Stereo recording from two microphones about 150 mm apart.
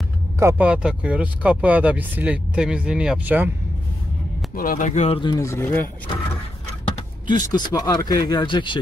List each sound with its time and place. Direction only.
0.4 s speech: 20° right (ahead or behind)
0.7 s speech: 5° right (ahead or behind)
4.6 s speech: 65° left (ahead or behind); by 5.2 s 45° left (ahead or behind)
5.2 s speech: 25° left (ahead or behind)
7.2 s speech: 30° left (ahead or behind)